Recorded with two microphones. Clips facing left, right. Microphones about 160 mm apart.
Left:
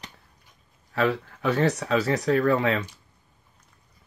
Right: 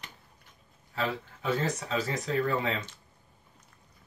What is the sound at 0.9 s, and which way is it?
Speech, 70° left (ahead or behind).